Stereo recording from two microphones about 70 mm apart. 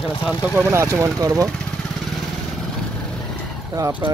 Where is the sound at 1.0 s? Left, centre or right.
Right.